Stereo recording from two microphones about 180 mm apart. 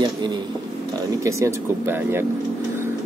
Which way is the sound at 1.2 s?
15° right (ahead or behind).